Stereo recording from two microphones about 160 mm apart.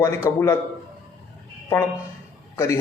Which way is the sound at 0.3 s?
20° left (ahead or behind).